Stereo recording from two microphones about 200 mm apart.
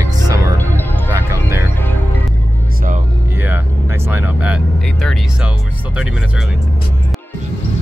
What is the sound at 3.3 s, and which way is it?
Vehicle, 10° right (ahead or behind).